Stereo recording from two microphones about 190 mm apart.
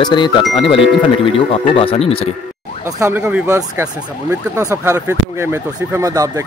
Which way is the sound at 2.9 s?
15° right (ahead or behind).